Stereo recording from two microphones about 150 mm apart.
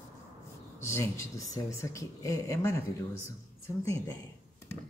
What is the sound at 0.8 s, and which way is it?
Speech, 20° left (ahead or behind).